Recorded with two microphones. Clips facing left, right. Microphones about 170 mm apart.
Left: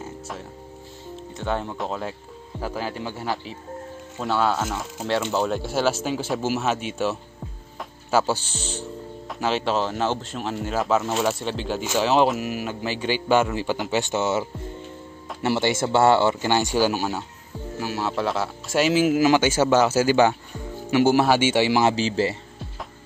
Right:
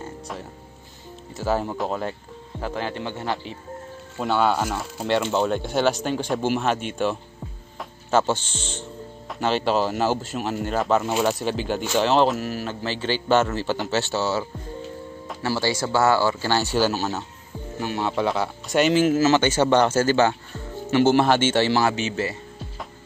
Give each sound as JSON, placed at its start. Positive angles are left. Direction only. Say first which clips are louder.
{"t": 0.0, "sound": "music", "louder": "even", "side_deg": 0}
{"t": 1.3, "sound": "speech", "louder": "right 3 dB", "side_deg": -5}
{"t": 15.4, "sound": "speech", "louder": "left 2 dB", "side_deg": 25}
{"t": 21.8, "sound": "speech", "louder": "left 3 dB", "side_deg": 30}